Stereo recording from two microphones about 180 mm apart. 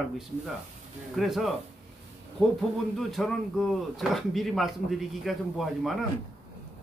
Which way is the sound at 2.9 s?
Centre (ahead or behind).